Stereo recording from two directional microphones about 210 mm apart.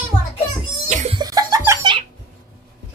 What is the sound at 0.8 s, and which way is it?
Cough, 35° right (ahead or behind).